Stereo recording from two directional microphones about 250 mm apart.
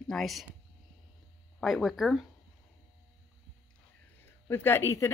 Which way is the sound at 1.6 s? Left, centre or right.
Centre.